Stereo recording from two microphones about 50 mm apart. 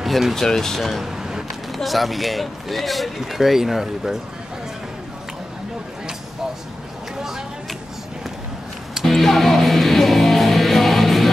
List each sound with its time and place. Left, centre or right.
0.0 s speech: centre
0.7 s a sound: centre
1.8 s speech: centre
9.0 s music: centre